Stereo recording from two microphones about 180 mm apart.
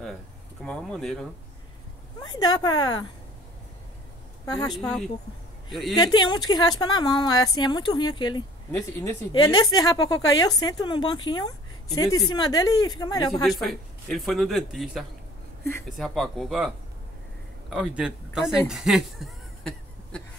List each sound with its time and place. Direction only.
0.7 s speech: 5° left (ahead or behind)
2.3 s speech: 20° left (ahead or behind)
4.5 s speech: 20° left (ahead or behind)
4.7 s speech: 5° left (ahead or behind)
5.9 s speech: 25° left (ahead or behind)
13.3 s speech: centre (ahead or behind)
18.7 s a sound: 5° right (ahead or behind)